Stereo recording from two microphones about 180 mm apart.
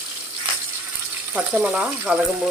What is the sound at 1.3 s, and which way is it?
Speech, 10° right (ahead or behind).